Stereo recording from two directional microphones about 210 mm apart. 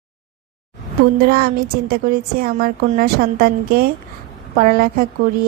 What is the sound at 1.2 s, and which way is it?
Speech, 45° right (ahead or behind).